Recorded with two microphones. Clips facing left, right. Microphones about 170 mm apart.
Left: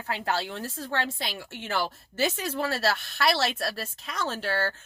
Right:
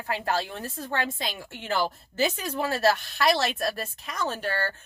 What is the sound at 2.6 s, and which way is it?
Speech, 15° right (ahead or behind).